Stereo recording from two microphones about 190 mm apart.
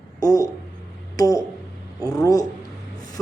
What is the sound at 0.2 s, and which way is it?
A man's voice, 20° left (ahead or behind).